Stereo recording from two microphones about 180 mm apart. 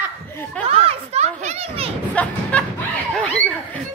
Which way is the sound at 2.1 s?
5° left (ahead or behind).